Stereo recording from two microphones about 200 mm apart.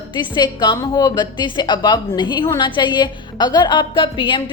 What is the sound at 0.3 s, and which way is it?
A woman's voice, 20° left (ahead or behind).